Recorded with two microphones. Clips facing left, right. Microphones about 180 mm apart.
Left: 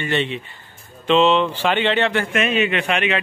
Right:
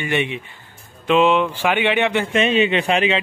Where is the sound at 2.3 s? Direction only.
30° right (ahead or behind).